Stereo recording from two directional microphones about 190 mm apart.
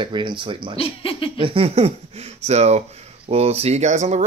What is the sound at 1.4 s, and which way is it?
Speech, 30° right (ahead or behind).